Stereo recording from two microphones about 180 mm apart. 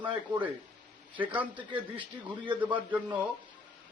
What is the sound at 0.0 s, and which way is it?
A man's voice, 10° right (ahead or behind).